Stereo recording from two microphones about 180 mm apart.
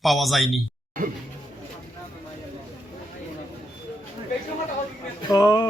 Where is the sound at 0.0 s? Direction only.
Centre (ahead or behind).